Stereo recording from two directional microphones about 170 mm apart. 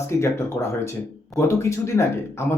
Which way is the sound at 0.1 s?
15° left (ahead or behind).